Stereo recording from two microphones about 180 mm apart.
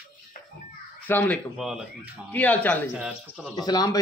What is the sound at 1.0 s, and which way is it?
Speech, 10° left (ahead or behind).